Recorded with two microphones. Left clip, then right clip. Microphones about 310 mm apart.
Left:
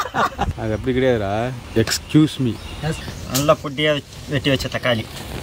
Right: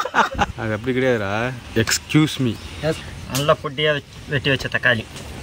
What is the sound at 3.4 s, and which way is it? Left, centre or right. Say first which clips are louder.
Speech: left 1 dB; centre.